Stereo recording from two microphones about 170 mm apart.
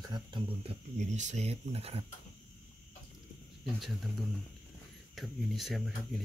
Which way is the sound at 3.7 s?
Centre (ahead or behind).